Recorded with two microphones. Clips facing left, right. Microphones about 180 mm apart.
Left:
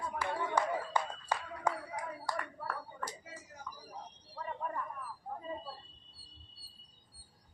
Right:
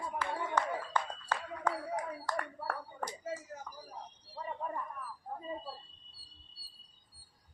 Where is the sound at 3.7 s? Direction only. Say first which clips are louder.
Even; 55° right (ahead or behind).